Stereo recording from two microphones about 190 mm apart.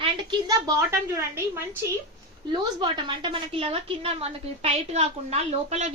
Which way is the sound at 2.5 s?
25° right (ahead or behind).